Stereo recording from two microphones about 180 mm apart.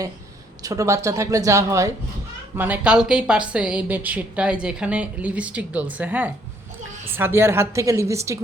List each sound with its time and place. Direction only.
0.6 s a woman's voice: 20° right (ahead or behind)